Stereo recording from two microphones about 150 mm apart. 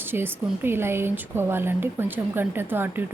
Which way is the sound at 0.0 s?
15° right (ahead or behind).